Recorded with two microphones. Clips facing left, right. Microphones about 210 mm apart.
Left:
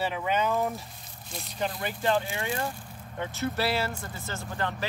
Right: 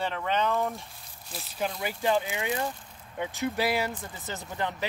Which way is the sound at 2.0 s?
15° right (ahead or behind).